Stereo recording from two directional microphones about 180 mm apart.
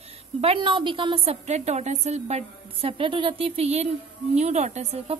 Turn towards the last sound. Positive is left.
turn(degrees=-35)  # may be behind; listen again after turning